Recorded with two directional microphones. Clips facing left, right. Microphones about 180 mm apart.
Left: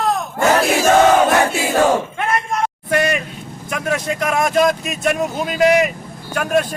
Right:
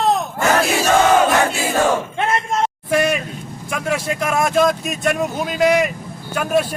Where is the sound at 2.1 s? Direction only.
25° right (ahead or behind).